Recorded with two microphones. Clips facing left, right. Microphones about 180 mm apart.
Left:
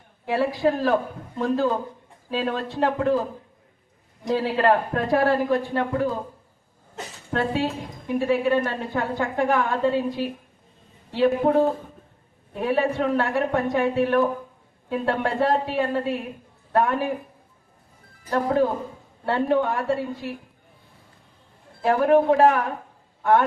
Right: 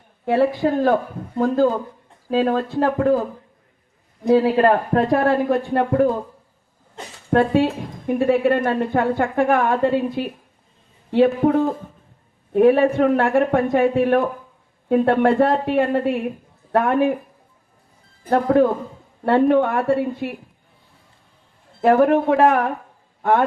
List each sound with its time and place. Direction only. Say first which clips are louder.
0.3 s a woman's voice: right 4 dB; 55° right (ahead or behind)
2.3 s speech: right 7 dB; 45° right (ahead or behind)
4.4 s speech: right 4 dB; 50° right (ahead or behind)
7.3 s a woman's voice: right 8 dB; 55° right (ahead or behind)
12.5 s a woman's voice: right 9 dB; 55° right (ahead or behind)
18.3 s a woman's voice: right 5 dB; 55° right (ahead or behind)
21.8 s a woman's voice: right 3 dB; 60° right (ahead or behind)